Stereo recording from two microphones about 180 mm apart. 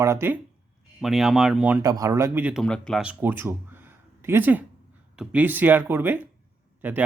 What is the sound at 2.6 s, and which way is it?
Speech, 5° left (ahead or behind).